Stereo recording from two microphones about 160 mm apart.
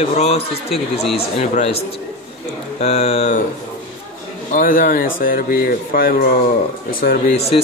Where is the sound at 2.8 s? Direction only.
40° left (ahead or behind).